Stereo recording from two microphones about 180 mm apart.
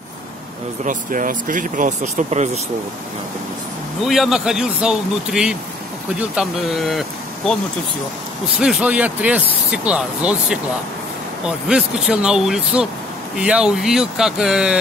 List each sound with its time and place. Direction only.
0.8 s speech: 45° right (ahead or behind)
4.0 s speech: centre (ahead or behind)
8.5 s speech: 5° right (ahead or behind)